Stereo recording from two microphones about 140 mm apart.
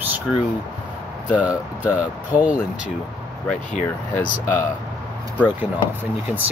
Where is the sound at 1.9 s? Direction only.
10° right (ahead or behind).